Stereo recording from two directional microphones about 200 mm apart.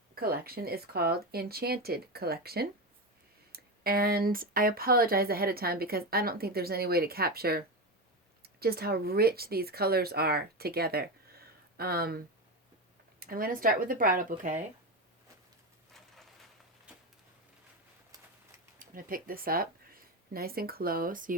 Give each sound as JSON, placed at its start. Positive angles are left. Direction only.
{"t": 0.1, "sound": "speech", "side_deg": -50}
{"t": 18.8, "sound": "speech", "side_deg": -45}